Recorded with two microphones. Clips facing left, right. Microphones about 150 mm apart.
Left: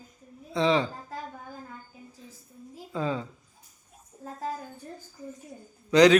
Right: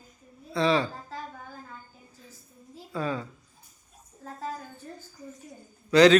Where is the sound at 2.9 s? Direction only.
20° left (ahead or behind).